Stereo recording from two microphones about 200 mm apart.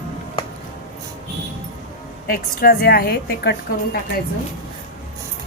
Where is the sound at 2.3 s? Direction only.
50° left (ahead or behind).